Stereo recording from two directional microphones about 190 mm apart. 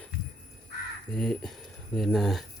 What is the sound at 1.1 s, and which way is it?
Speech, 5° left (ahead or behind).